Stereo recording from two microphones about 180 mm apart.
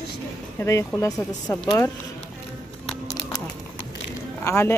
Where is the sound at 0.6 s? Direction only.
15° left (ahead or behind).